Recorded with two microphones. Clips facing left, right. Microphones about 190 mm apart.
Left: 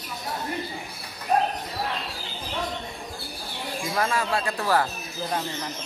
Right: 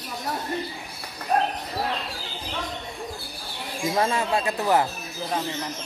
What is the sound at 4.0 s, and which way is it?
Speech, 25° right (ahead or behind).